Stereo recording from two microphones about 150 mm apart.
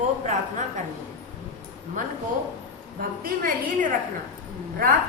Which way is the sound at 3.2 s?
75° right (ahead or behind).